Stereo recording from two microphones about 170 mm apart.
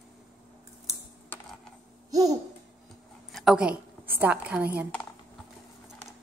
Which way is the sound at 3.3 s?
5° right (ahead or behind).